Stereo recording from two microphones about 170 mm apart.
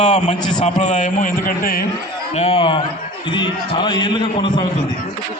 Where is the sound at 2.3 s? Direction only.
35° left (ahead or behind).